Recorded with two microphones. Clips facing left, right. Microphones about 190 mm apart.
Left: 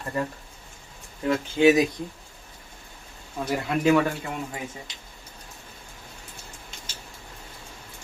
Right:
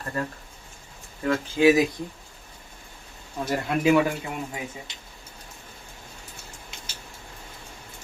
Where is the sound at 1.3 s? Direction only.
20° left (ahead or behind).